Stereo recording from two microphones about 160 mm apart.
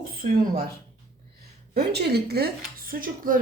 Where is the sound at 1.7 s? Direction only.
85° right.